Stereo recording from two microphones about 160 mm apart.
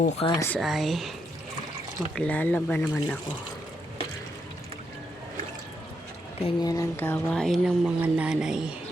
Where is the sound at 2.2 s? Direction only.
10° left (ahead or behind).